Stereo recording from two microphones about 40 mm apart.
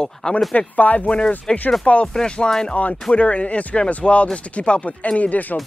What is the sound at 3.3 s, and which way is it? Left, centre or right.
Speech, left.